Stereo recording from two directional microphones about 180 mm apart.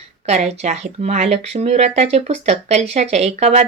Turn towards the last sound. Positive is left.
turn(degrees=-40)  # may be behind; listen again after turning